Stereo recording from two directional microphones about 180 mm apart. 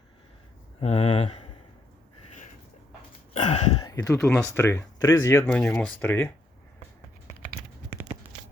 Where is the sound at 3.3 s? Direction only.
40° left (ahead or behind); by 4.2 s 20° left (ahead or behind).